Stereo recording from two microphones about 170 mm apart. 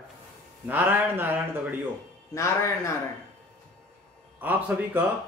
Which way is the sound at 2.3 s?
15° left (ahead or behind).